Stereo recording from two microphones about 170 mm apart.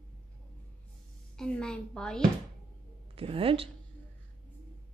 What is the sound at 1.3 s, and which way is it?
Speech, 5° left (ahead or behind).